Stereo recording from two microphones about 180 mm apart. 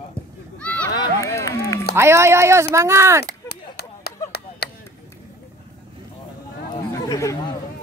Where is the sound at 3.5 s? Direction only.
60° left (ahead or behind).